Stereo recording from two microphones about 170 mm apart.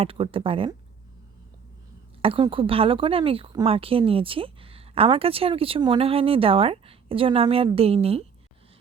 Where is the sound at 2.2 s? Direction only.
30° right (ahead or behind).